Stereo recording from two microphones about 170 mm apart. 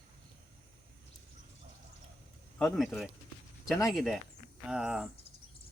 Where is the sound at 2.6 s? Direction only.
Centre (ahead or behind).